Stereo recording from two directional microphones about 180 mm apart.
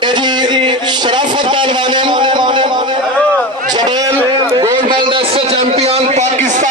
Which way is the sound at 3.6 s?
25° right (ahead or behind).